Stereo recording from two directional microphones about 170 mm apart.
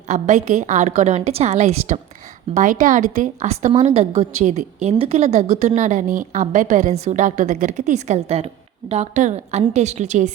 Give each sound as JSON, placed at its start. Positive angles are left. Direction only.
{"t": 0.1, "sound": "a woman's voice", "side_deg": -45}